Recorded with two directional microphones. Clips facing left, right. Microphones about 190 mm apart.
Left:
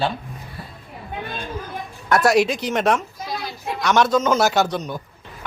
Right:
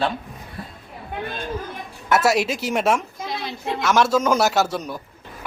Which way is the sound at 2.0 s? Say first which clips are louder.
Left 2 dB; 5° right (ahead or behind).